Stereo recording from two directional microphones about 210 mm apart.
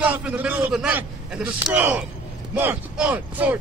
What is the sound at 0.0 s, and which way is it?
A man's voice, 5° right (ahead or behind).